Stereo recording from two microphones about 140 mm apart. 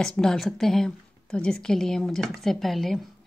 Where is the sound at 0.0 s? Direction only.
5° left (ahead or behind).